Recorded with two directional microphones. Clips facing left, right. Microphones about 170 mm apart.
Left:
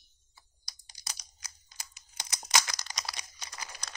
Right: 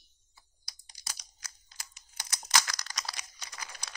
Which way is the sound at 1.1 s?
20° left (ahead or behind).